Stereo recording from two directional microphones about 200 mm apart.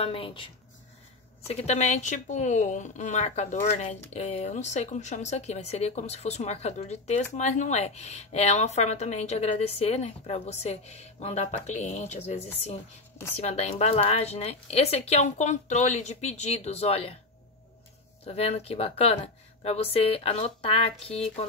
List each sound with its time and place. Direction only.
0.0 s speech: 25° left (ahead or behind)
1.5 s speech: 35° left (ahead or behind)
18.2 s speech: 30° left (ahead or behind)